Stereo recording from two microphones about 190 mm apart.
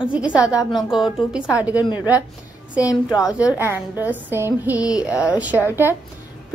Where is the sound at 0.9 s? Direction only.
5° right (ahead or behind).